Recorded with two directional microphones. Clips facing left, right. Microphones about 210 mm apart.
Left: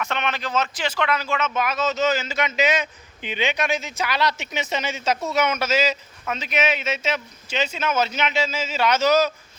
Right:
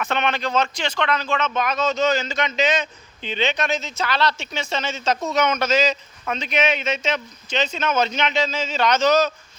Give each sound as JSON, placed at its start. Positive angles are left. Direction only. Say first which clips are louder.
{"t": 0.0, "sound": "speech", "louder": "right 3 dB", "side_deg": -35}
{"t": 0.3, "sound": "speech", "louder": "right 2 dB", "side_deg": 5}